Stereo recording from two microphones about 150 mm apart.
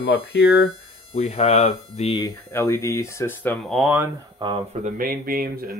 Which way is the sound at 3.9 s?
20° right (ahead or behind).